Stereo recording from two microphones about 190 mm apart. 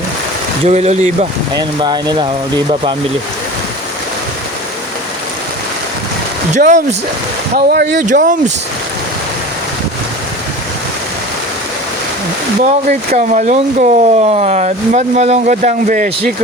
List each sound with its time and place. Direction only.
0.6 s speech: 35° right (ahead or behind)
1.8 s speech: 25° right (ahead or behind)
6.5 s speech: 40° right (ahead or behind)
7.5 s speech: 60° right (ahead or behind)
8.0 s speech: 45° right (ahead or behind)
12.6 s speech: 40° right (ahead or behind)